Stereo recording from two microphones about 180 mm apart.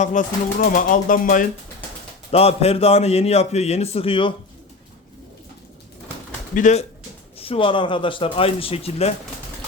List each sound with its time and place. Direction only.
0.0 s speech: 45° left (ahead or behind)
2.3 s a man's voice: 35° left (ahead or behind)
6.5 s speech: 45° left (ahead or behind)
7.3 s a man's voice: 30° left (ahead or behind)